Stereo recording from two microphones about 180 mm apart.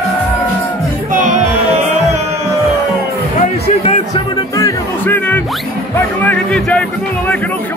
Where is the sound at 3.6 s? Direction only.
35° left (ahead or behind).